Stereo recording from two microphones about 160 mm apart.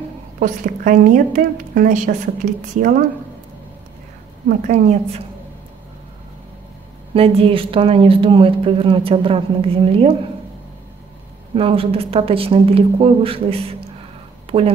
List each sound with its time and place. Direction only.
0.4 s a woman's voice: 55° right (ahead or behind)
4.5 s a woman's voice: 50° right (ahead or behind)
7.2 s a woman's voice: 35° right (ahead or behind)
11.5 s a woman's voice: 35° right (ahead or behind)